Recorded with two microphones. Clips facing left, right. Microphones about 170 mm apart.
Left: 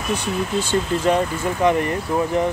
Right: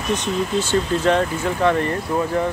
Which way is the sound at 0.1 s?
10° left (ahead or behind).